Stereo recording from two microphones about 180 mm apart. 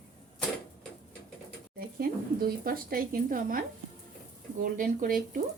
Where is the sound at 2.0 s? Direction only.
55° right (ahead or behind).